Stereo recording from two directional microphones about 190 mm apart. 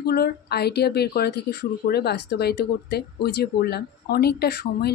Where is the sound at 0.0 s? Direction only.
55° left (ahead or behind).